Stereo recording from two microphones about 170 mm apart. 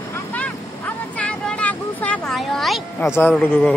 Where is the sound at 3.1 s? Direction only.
10° left (ahead or behind).